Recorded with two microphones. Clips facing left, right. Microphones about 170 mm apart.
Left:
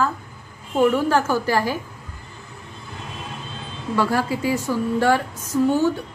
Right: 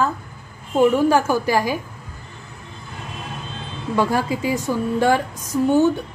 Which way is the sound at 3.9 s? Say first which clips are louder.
Right 1 dB; 20° right (ahead or behind).